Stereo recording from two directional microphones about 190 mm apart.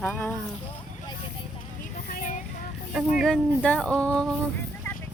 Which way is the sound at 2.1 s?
45° left (ahead or behind).